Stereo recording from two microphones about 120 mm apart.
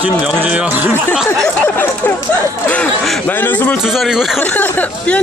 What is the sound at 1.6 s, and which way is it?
Speech, 15° left (ahead or behind).